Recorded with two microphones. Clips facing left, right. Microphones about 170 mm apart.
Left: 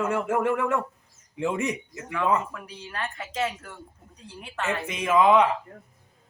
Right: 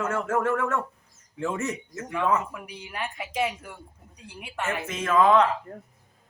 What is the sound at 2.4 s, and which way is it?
Speech, 15° right (ahead or behind).